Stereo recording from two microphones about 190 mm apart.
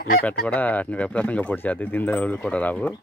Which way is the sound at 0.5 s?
10° left (ahead or behind).